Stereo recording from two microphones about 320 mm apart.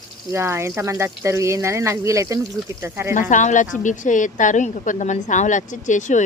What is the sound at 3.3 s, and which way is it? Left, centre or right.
A woman's voice, left.